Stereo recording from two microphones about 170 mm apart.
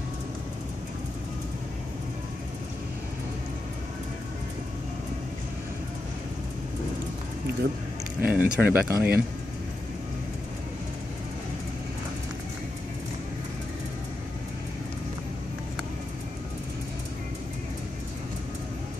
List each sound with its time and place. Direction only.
8.2 s speech: 10° right (ahead or behind)